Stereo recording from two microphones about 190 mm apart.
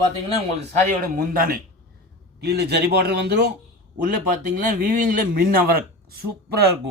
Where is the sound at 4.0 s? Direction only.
45° right (ahead or behind).